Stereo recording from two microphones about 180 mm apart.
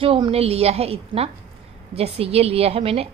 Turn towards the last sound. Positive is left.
turn(degrees=-30)  # may be behind; listen again after turning